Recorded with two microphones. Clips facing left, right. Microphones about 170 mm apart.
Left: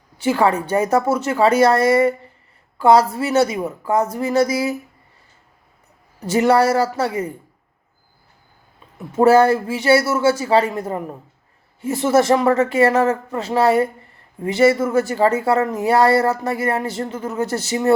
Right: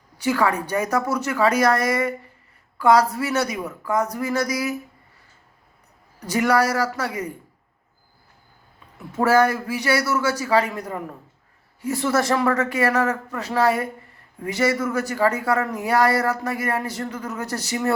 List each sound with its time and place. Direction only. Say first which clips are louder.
0.2 s speech: left 4 dB; 25° left (ahead or behind)
6.1 s speech: left 4 dB; 25° left (ahead or behind)
9.1 s speech: left 5 dB; 25° left (ahead or behind)